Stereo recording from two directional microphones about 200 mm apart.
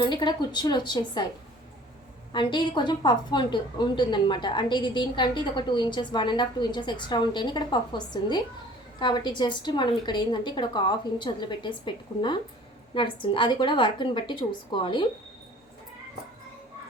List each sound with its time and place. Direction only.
0.0 s a woman's voice: 20° left (ahead or behind)
2.3 s a woman's voice: 25° left (ahead or behind)